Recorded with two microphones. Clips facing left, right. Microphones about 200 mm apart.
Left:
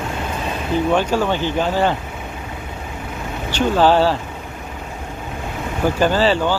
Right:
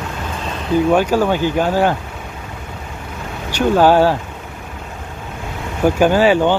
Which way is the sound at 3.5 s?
10° right (ahead or behind).